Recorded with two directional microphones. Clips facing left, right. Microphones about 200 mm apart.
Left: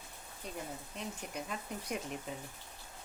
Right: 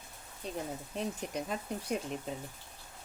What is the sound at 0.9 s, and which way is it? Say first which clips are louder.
Speech: right 7 dB; 35° right (ahead or behind).